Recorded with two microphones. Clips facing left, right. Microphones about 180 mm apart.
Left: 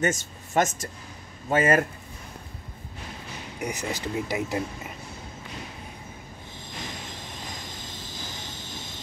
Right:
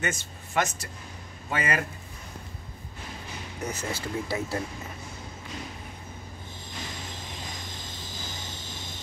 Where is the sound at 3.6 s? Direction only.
15° left (ahead or behind).